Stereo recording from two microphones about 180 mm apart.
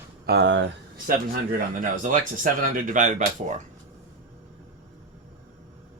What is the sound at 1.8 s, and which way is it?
Speech, 45° right (ahead or behind).